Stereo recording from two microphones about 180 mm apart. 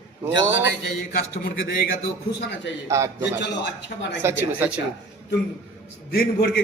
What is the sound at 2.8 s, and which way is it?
Speech, 15° right (ahead or behind).